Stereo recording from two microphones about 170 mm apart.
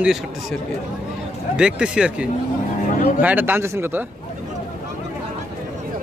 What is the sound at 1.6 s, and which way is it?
A man's voice, 5° right (ahead or behind).